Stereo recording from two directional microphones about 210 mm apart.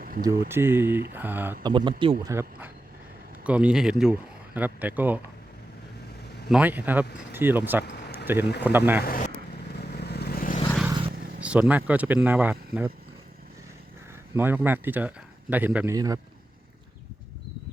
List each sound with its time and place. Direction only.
0.2 s speech: 15° right (ahead or behind)
1.6 s speech: 20° right (ahead or behind)
2.2 s speech: 10° right (ahead or behind)
6.5 s speech: 10° right (ahead or behind)
7.9 s a sound: 50° left (ahead or behind)
8.7 s speech: 10° right (ahead or behind)
9.0 s speech: 40° left (ahead or behind)
9.9 s vehicle: 50° left (ahead or behind)
10.8 s vehicle: 20° right (ahead or behind)
11.3 s speech: 5° right (ahead or behind)
14.3 s speech: 10° right (ahead or behind)